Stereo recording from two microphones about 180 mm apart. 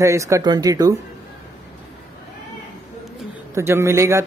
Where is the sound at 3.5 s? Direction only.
15° right (ahead or behind).